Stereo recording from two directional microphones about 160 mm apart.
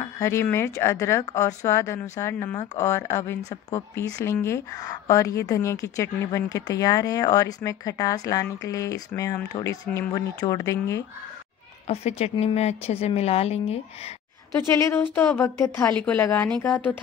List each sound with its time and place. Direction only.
0.0 s speech: 15° left (ahead or behind)
11.9 s a woman's voice: 40° left (ahead or behind)
14.7 s a woman's voice: 15° left (ahead or behind)